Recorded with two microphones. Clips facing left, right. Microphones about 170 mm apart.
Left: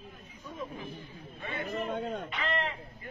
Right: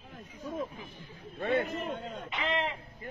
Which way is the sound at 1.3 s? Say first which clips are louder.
Right 11 dB; 60° right (ahead or behind).